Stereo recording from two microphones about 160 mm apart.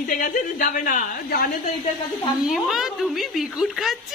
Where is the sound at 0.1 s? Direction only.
55° left (ahead or behind).